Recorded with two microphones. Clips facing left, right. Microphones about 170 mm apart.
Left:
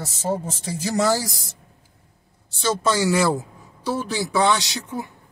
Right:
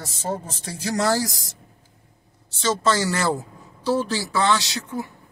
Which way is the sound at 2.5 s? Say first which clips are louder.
Even; 10° left (ahead or behind).